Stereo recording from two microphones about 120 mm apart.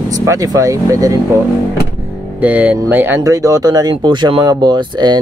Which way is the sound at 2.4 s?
15° right (ahead or behind).